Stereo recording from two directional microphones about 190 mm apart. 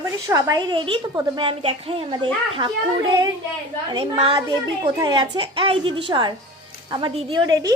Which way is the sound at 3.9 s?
25° right (ahead or behind).